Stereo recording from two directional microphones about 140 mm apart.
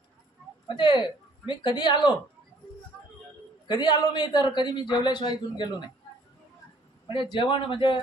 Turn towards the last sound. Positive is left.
turn(degrees=35)  # may be behind; listen again after turning